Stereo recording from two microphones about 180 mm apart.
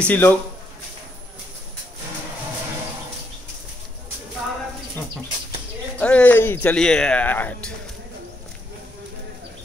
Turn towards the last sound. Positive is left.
turn(degrees=10)  # may be behind; listen again after turning